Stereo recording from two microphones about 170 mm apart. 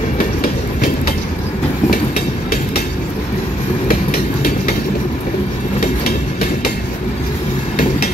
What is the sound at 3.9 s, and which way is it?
Train, 60° left (ahead or behind).